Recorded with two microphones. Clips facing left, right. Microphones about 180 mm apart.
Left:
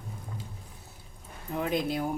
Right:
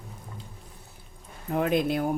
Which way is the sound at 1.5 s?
60° right (ahead or behind).